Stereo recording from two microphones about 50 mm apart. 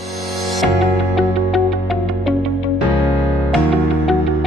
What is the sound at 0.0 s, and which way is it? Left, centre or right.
Music, centre.